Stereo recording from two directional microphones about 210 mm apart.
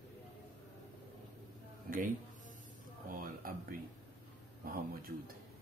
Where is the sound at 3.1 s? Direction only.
45° right (ahead or behind).